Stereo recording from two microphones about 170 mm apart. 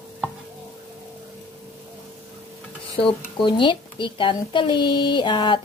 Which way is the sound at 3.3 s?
30° left (ahead or behind).